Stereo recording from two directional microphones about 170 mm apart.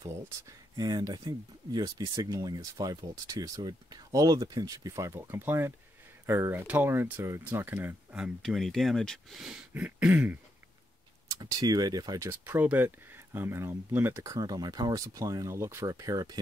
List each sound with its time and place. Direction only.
0.0 s speech: 20° right (ahead or behind)
8.4 s speech: centre (ahead or behind)
11.2 s speech: 20° right (ahead or behind)